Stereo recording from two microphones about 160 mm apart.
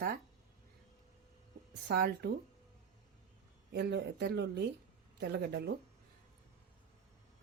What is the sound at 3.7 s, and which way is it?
Speech, 90° right.